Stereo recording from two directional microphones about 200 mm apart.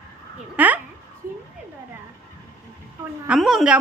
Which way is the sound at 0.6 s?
10° right (ahead or behind).